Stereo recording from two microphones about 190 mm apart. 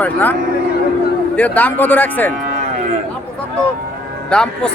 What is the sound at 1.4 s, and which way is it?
Speech, 10° left (ahead or behind).